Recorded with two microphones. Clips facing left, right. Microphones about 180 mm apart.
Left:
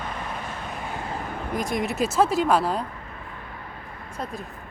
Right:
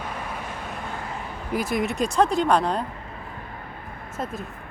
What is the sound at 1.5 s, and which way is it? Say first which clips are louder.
Speech: right 2 dB; 5° right (ahead or behind).